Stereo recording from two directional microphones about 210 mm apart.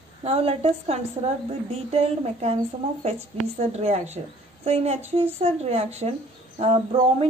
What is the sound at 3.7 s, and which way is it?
Speech, 30° right (ahead or behind).